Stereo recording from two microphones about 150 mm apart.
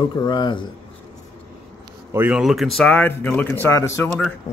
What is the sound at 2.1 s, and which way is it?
Speech, 10° right (ahead or behind).